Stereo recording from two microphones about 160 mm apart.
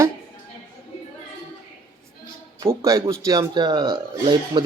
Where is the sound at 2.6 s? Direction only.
20° right (ahead or behind).